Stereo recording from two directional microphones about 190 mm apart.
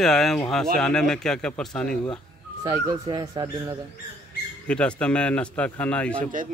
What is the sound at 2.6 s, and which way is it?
Speech, 20° right (ahead or behind).